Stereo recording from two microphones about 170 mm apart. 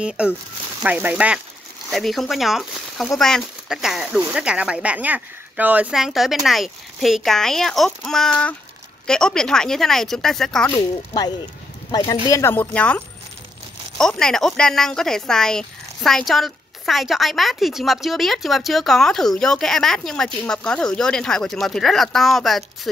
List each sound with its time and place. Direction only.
0.2 s speech: 5° right (ahead or behind)
10.7 s speech: 25° left (ahead or behind); by 22.7 s centre (ahead or behind)